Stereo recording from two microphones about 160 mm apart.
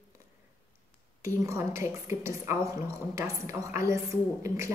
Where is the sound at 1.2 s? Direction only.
20° right (ahead or behind).